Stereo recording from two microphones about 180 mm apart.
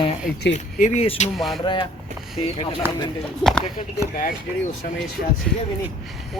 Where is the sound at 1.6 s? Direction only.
25° left (ahead or behind).